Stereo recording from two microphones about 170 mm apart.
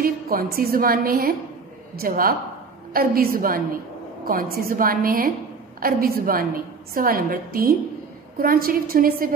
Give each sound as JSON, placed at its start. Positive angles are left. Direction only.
{"t": 0.0, "sound": "a woman's voice", "side_deg": -60}